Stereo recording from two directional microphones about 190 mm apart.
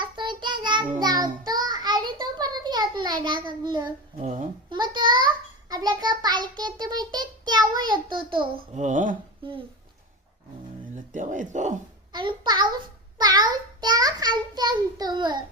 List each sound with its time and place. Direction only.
0.0 s child singing: 25° right (ahead or behind)
4.2 s speech: 40° right (ahead or behind)
4.7 s a sound: 25° right (ahead or behind)
8.7 s speech: 40° right (ahead or behind)
10.9 s speech: 40° right (ahead or behind)
12.1 s a sound: 25° right (ahead or behind)